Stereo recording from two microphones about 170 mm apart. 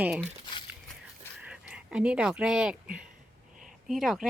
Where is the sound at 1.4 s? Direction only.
5° right (ahead or behind).